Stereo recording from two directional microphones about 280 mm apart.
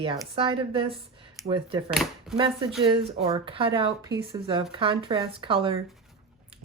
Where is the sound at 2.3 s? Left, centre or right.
Centre.